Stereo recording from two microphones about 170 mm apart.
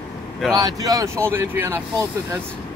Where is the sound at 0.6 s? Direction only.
20° right (ahead or behind).